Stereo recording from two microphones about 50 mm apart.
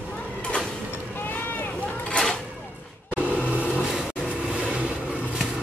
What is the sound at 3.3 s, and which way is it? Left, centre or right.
Vehicle, right.